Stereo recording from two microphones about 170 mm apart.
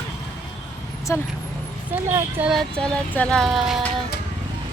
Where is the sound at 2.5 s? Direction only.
5° left (ahead or behind).